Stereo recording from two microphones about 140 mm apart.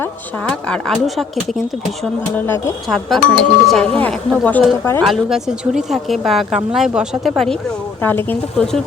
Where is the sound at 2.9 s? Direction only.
Centre (ahead or behind).